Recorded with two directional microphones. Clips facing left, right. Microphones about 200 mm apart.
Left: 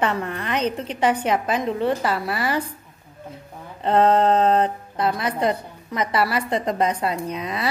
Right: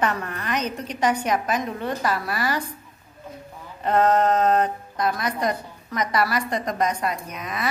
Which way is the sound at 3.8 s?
25° left (ahead or behind).